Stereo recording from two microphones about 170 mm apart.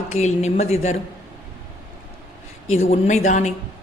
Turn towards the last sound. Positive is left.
turn(degrees=45)  # may be behind; listen again after turning